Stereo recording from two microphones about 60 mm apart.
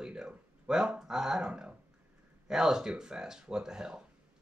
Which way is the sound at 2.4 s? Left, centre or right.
Centre.